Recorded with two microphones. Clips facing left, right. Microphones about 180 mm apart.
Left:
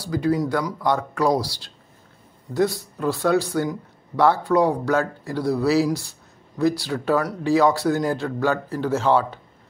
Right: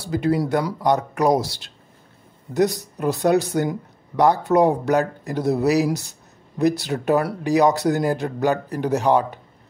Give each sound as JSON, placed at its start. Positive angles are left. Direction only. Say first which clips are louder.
{"t": 0.0, "sound": "speech", "louder": "right 1 dB", "side_deg": -25}